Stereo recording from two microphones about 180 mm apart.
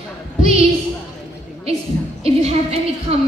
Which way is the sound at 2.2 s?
35° right (ahead or behind).